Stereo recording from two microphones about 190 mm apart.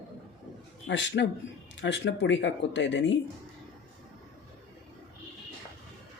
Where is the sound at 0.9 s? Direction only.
70° left (ahead or behind).